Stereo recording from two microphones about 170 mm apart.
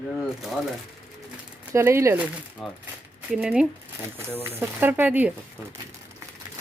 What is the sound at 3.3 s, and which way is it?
Speech, 5° right (ahead or behind).